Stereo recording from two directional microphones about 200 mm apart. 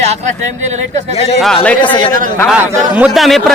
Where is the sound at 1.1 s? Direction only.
30° left (ahead or behind).